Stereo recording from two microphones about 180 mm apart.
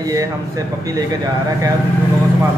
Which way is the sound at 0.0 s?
20° right (ahead or behind).